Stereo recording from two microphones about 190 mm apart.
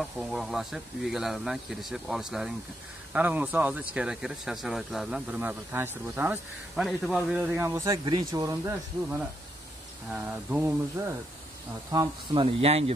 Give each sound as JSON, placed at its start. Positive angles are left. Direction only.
{"t": 0.0, "sound": "speech", "side_deg": 0}
{"t": 10.1, "sound": "speech", "side_deg": -5}
{"t": 12.4, "sound": "speech", "side_deg": -30}